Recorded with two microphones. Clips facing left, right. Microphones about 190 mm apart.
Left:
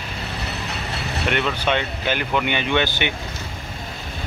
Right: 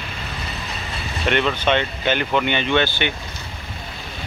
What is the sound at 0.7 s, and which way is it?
Vehicle, 70° left (ahead or behind).